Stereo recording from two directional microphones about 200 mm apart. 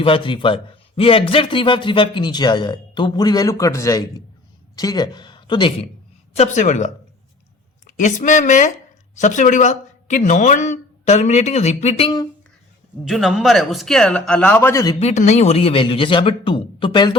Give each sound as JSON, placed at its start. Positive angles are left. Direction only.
{"t": 0.0, "sound": "a man's voice", "side_deg": 25}
{"t": 6.3, "sound": "speech", "side_deg": 35}
{"t": 13.1, "sound": "speech", "side_deg": 0}
{"t": 14.9, "sound": "speech", "side_deg": 35}